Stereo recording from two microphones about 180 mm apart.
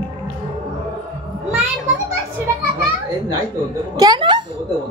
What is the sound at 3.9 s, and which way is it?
Speech, 20° right (ahead or behind).